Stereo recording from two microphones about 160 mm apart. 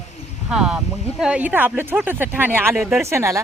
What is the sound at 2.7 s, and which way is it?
Speech, centre (ahead or behind).